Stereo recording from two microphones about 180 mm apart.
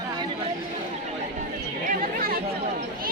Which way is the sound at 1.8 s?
50° right (ahead or behind).